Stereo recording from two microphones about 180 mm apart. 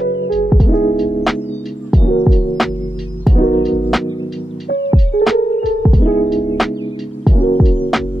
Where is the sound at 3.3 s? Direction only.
60° left (ahead or behind).